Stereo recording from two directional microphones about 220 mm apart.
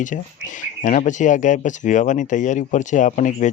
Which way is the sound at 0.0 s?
35° left (ahead or behind).